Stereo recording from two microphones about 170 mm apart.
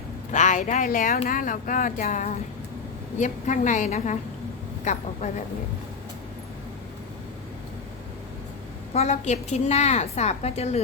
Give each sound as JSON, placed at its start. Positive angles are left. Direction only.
{"t": 0.3, "sound": "speech", "side_deg": 45}
{"t": 8.9, "sound": "a woman's voice", "side_deg": 40}